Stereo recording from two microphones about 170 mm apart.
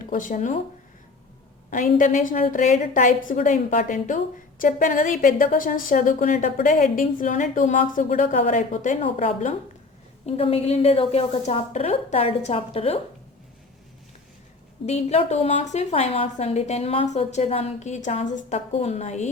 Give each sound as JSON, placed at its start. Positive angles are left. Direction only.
{"t": 0.0, "sound": "speech", "side_deg": 50}
{"t": 1.7, "sound": "a woman's voice", "side_deg": 50}
{"t": 14.8, "sound": "a woman's voice", "side_deg": 40}